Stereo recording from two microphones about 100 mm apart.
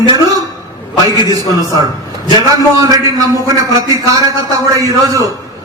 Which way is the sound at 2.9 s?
35° right (ahead or behind).